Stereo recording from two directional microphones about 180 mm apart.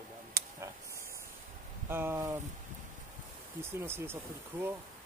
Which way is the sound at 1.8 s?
10° right (ahead or behind).